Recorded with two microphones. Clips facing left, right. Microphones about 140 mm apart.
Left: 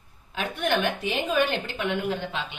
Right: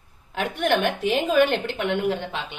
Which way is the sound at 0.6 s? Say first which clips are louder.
Right 4 dB; 75° right (ahead or behind).